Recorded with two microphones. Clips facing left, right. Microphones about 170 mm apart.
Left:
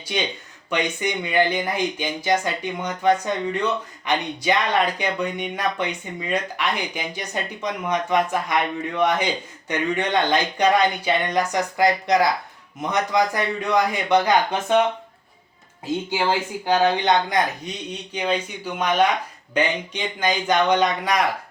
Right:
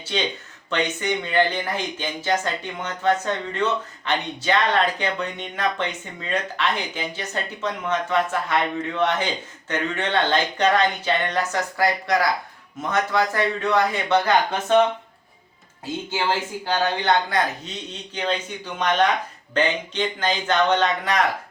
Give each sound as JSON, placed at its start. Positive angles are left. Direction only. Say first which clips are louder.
{"t": 0.7, "sound": "speech", "louder": "even", "side_deg": 15}
{"t": 16.6, "sound": "speech", "louder": "left 3 dB", "side_deg": 15}